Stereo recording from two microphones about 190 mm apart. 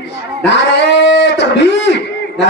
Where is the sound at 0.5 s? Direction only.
65° left (ahead or behind).